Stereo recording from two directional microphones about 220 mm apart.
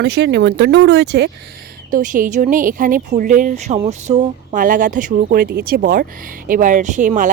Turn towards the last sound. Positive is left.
turn(degrees=-35)  # may be behind; listen again after turning